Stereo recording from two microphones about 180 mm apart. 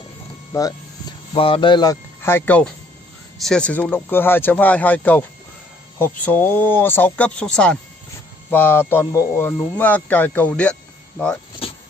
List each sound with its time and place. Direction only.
0.5 s speech: 20° left (ahead or behind)
1.3 s speech: 30° left (ahead or behind); by 11.3 s 5° left (ahead or behind)
11.6 s vehicle: 30° left (ahead or behind)